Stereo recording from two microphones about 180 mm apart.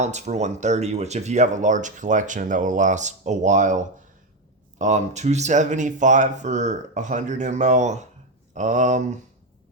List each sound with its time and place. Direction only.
0.0 s speech: 40° right (ahead or behind)